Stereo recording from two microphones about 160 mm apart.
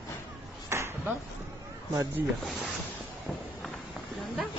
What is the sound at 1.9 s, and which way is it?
Speech, 15° right (ahead or behind).